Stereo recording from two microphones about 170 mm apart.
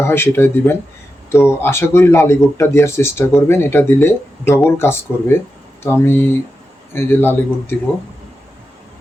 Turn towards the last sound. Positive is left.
turn(degrees=15)  # may be behind; listen again after turning